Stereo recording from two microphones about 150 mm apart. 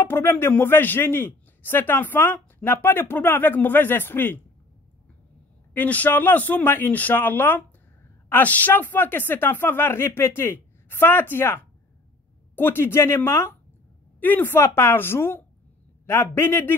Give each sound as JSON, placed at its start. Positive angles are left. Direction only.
{"t": 0.0, "sound": "a man's voice", "side_deg": 15}
{"t": 5.7, "sound": "a man's voice", "side_deg": 10}